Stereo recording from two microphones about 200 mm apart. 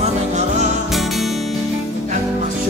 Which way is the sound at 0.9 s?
Centre (ahead or behind).